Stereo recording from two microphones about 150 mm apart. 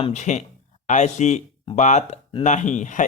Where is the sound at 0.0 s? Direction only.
50° left (ahead or behind).